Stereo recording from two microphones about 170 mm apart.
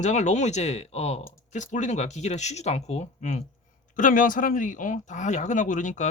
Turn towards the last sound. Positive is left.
turn(degrees=45)  # may be behind; listen again after turning